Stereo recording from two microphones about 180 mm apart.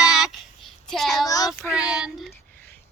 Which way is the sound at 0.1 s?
Centre (ahead or behind).